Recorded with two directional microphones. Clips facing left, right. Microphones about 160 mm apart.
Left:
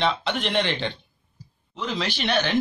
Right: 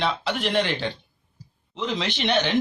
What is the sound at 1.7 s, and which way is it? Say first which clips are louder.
Speech: right 1 dB; 20° right (ahead or behind).